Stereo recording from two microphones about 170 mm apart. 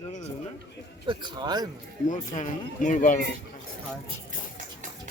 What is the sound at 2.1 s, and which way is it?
Speech, 50° left (ahead or behind).